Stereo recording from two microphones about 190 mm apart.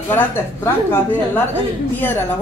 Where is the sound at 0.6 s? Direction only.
10° left (ahead or behind).